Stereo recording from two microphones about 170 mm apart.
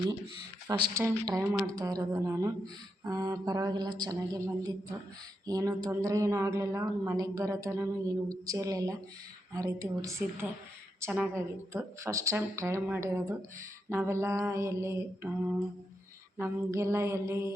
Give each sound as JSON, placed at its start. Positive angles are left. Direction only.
{"t": 0.7, "sound": "a woman's voice", "side_deg": -20}
{"t": 16.4, "sound": "a woman's voice", "side_deg": -15}